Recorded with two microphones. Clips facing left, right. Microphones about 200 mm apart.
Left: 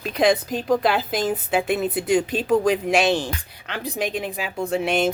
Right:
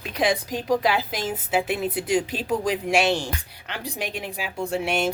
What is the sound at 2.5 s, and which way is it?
Speech, 60° left (ahead or behind).